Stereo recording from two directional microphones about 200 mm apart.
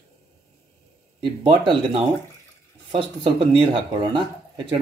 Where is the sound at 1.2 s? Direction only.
25° right (ahead or behind).